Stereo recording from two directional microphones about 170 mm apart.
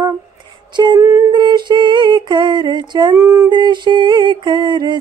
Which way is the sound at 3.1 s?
15° right (ahead or behind).